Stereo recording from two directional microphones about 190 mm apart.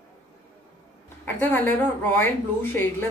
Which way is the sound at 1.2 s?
10° left (ahead or behind).